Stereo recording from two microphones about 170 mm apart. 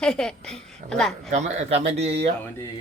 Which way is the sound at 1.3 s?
40° right (ahead or behind).